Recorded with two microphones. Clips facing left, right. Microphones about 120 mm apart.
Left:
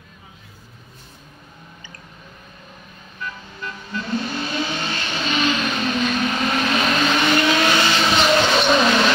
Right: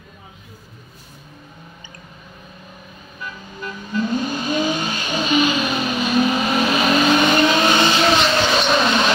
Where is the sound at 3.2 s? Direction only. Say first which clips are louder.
Even; 15° right (ahead or behind).